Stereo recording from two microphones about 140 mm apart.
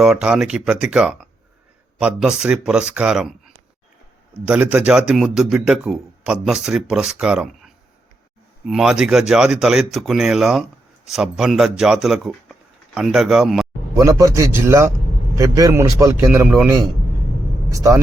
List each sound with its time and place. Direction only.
0.0 s speech: 5° right (ahead or behind)
13.9 s a man's voice: 25° right (ahead or behind)